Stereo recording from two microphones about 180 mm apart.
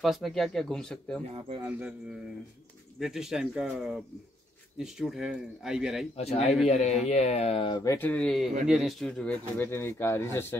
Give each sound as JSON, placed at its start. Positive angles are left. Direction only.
{"t": 0.0, "sound": "speech", "side_deg": 0}
{"t": 3.0, "sound": "speech", "side_deg": 0}
{"t": 6.1, "sound": "speech", "side_deg": 35}
{"t": 7.8, "sound": "speech", "side_deg": 15}